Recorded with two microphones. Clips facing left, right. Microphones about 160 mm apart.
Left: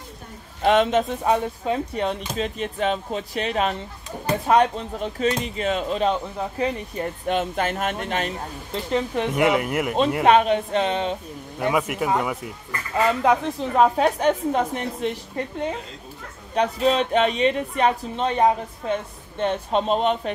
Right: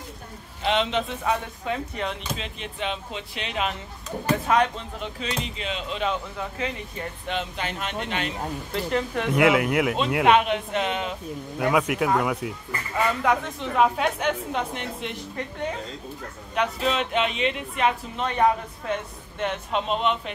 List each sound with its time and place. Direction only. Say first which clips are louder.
0.6 s speech: left 6 dB; 50° left (ahead or behind)
8.9 s speech: left 4 dB; 25° left (ahead or behind)
9.3 s speech: right 2 dB; centre (ahead or behind)
10.2 s a woman's voice: left 2 dB; 35° left (ahead or behind)
11.7 s speech: right 1 dB; centre (ahead or behind)
12.9 s a woman's voice: left 4 dB; 35° left (ahead or behind)
16.5 s a woman's voice: left 5 dB; 35° left (ahead or behind)